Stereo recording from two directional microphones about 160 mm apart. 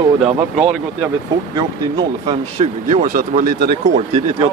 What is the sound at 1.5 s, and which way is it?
Speech, 30° right (ahead or behind).